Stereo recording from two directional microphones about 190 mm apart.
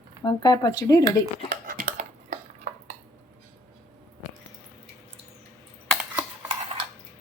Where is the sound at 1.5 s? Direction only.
45° right (ahead or behind).